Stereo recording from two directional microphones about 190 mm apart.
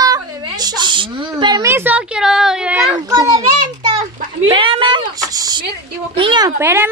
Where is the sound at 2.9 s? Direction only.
20° right (ahead or behind).